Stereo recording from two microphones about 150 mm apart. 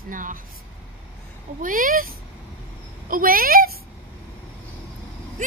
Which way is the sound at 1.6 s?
65° right (ahead or behind).